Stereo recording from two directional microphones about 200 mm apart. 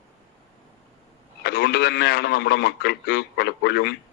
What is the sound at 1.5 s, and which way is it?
A man's voice, 55° left (ahead or behind).